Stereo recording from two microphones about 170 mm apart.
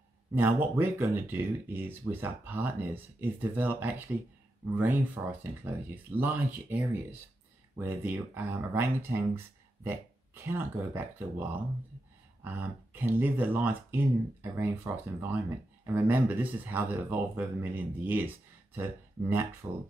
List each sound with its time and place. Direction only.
0.3 s speech: 15° right (ahead or behind)
12.4 s speech: 10° right (ahead or behind)